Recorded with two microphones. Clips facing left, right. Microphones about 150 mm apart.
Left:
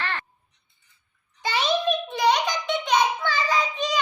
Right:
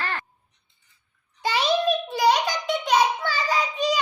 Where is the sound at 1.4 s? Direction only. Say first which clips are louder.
Right 2 dB; 10° right (ahead or behind).